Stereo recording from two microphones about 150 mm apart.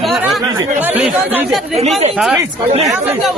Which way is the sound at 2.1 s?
10° right (ahead or behind).